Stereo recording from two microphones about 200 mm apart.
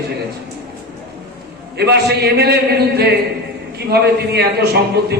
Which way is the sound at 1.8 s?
55° right (ahead or behind).